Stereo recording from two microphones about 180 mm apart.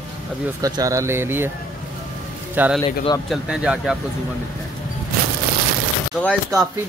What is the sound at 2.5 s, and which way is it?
Speech, 10° right (ahead or behind).